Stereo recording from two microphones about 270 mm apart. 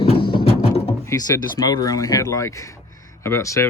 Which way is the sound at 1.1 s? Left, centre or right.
Centre.